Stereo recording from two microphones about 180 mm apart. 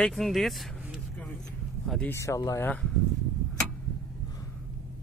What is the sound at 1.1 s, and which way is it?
Vehicle, 10° left (ahead or behind).